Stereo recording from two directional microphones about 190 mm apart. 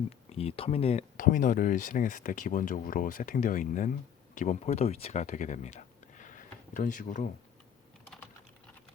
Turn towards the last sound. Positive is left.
turn(degrees=45)  # may be behind; listen again after turning